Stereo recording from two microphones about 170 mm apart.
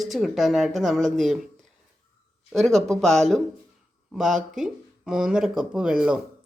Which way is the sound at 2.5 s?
Centre (ahead or behind).